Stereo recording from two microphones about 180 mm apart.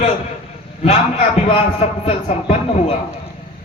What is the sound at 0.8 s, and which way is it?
A man's voice, 35° left (ahead or behind).